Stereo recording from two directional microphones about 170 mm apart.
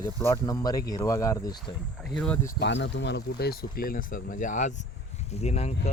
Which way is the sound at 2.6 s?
90° left.